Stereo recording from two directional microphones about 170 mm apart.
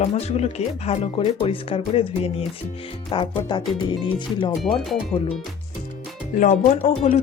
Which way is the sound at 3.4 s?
25° left (ahead or behind).